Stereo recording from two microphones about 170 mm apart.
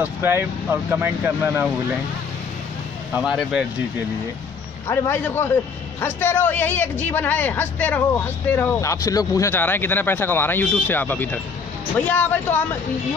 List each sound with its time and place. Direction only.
0.0 s speech: 15° right (ahead or behind)
3.2 s speech: 5° right (ahead or behind)
4.8 s speech: 15° left (ahead or behind)